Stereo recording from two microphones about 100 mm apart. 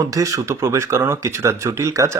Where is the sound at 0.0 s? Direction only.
35° right (ahead or behind).